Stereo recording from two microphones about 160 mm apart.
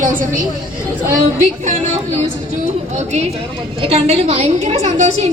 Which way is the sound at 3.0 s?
45° right (ahead or behind).